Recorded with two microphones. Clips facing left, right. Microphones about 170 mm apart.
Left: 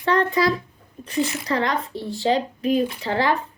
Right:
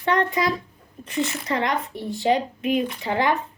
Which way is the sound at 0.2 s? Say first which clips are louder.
Left 3 dB; 20° right (ahead or behind).